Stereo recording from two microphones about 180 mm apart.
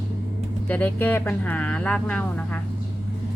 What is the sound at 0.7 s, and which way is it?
Speech, 10° left (ahead or behind).